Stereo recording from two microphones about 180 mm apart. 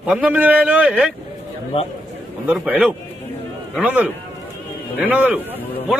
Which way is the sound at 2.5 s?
10° right (ahead or behind).